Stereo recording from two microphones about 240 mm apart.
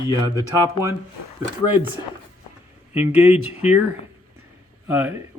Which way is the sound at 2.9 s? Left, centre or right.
Centre.